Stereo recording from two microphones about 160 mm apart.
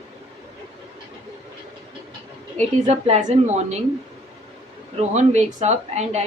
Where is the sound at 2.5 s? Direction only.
45° right (ahead or behind).